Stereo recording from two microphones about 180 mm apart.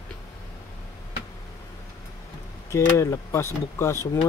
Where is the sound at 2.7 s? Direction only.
15° left (ahead or behind).